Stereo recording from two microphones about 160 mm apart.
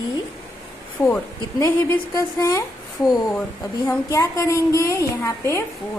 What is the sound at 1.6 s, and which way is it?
A woman's voice, 20° left (ahead or behind).